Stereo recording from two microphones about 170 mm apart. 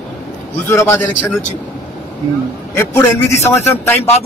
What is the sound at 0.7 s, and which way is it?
Speech, 15° left (ahead or behind).